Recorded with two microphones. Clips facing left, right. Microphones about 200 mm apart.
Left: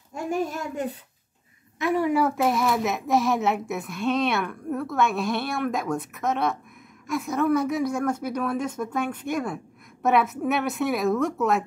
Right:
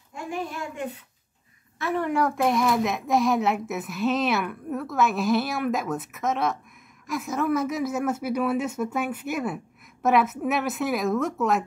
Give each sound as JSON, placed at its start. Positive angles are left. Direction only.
{"t": 0.1, "sound": "a child's voice", "side_deg": 45}
{"t": 1.8, "sound": "a woman's voice", "side_deg": 10}